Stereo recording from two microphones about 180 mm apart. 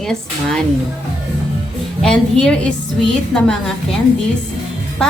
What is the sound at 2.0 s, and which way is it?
A woman's voice, 5° left (ahead or behind).